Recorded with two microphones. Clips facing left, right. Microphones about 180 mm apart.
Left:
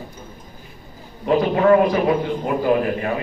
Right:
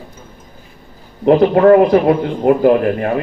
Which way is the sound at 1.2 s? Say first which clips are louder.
Right 7 dB; 55° right (ahead or behind).